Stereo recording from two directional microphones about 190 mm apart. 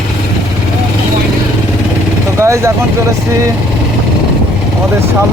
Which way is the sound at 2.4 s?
15° right (ahead or behind).